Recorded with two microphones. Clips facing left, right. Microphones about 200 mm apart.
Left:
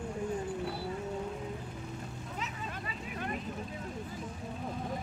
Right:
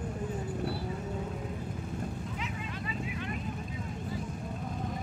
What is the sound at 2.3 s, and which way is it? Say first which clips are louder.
Vehicle: right 2 dB; 40° left (ahead or behind).